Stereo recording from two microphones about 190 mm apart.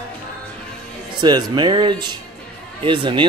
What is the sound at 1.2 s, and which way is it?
Speech, 25° right (ahead or behind).